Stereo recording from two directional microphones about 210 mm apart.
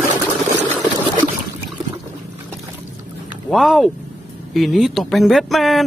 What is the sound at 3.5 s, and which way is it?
Speech, centre (ahead or behind).